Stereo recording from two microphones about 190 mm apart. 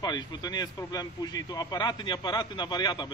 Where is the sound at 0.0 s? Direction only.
20° left (ahead or behind).